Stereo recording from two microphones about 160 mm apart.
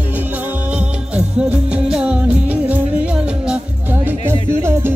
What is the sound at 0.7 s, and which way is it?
Music, 10° right (ahead or behind).